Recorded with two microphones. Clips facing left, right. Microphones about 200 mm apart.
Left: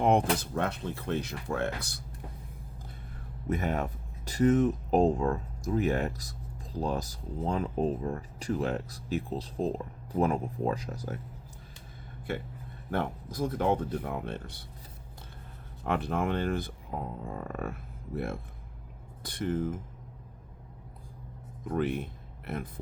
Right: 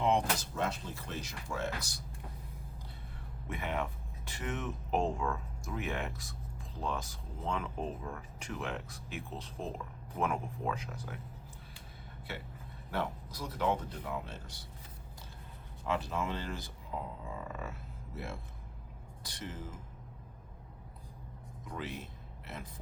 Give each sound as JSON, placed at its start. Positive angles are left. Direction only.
{"t": 0.0, "sound": "speech", "side_deg": 55}
{"t": 3.4, "sound": "speech", "side_deg": 40}
{"t": 12.3, "sound": "speech", "side_deg": 50}
{"t": 15.8, "sound": "speech", "side_deg": 55}
{"t": 21.6, "sound": "speech", "side_deg": 55}